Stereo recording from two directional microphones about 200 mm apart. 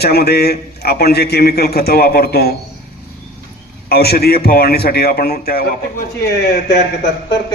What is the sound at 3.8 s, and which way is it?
A man's voice, 50° left (ahead or behind).